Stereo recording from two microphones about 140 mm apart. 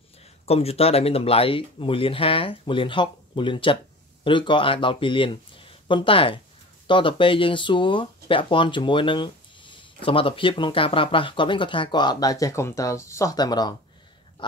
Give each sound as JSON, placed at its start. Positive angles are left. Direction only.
{"t": 0.5, "sound": "speech", "side_deg": 45}